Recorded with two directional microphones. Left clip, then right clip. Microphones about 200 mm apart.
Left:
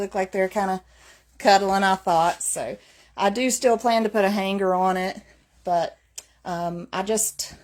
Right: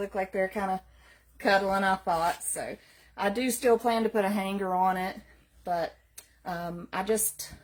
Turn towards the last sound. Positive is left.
turn(degrees=40)  # may be behind; listen again after turning